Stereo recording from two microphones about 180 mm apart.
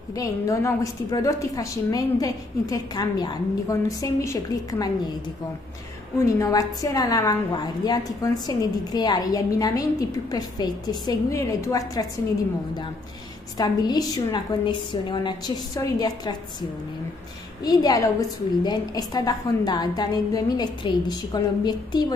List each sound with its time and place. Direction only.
0.1 s a woman's voice: 20° left (ahead or behind)
6.4 s a woman's voice: 20° left (ahead or behind)
13.6 s a woman's voice: 20° left (ahead or behind)
17.6 s a woman's voice: 20° left (ahead or behind)